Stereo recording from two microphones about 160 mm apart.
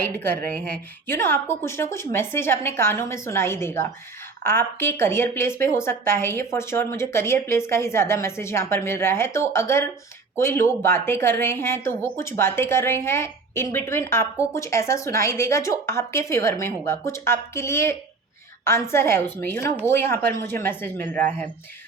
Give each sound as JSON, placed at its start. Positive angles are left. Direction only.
{"t": 0.0, "sound": "speech", "side_deg": 15}